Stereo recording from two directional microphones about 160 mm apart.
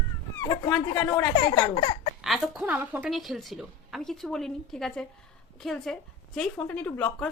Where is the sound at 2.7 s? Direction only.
15° right (ahead or behind).